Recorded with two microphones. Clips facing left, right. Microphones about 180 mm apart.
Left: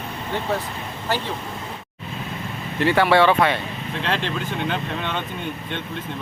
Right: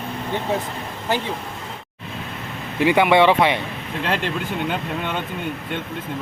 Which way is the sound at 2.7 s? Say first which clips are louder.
Right 2 dB; 15° right (ahead or behind).